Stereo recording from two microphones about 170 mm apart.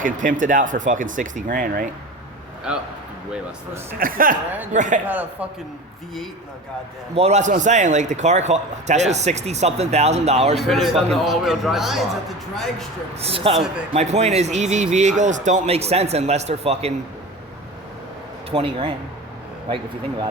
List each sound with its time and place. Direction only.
0.0 s speech: 50° right (ahead or behind)
3.9 s speech: 55° right (ahead or behind)
5.0 s a man's voice: 10° right (ahead or behind)
7.2 s a man's voice: 40° right (ahead or behind)
10.6 s speech: centre (ahead or behind)
13.1 s a man's voice: 35° right (ahead or behind)
18.5 s a man's voice: 35° right (ahead or behind)